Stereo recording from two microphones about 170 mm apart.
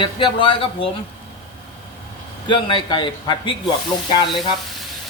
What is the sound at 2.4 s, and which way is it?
A man's voice, 30° left (ahead or behind).